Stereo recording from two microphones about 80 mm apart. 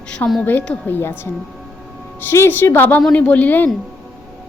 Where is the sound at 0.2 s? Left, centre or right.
Left.